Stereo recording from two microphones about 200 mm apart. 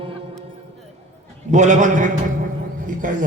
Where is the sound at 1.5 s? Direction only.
40° right (ahead or behind).